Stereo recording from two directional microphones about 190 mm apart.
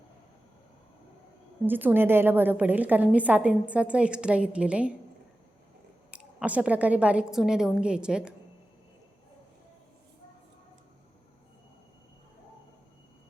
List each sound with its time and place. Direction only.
1.6 s a woman's voice: 10° right (ahead or behind)
6.1 s a woman's voice: 5° right (ahead or behind)